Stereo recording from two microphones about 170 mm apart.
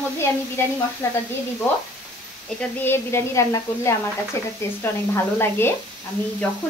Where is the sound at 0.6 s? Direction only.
15° left (ahead or behind).